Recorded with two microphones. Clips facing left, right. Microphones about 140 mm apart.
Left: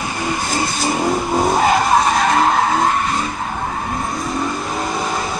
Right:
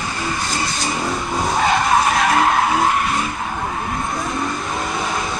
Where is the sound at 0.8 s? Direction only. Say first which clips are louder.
Left 7 dB; 40° left (ahead or behind).